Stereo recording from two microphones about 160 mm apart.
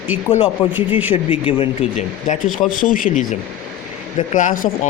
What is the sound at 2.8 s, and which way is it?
Speech, 60° left (ahead or behind).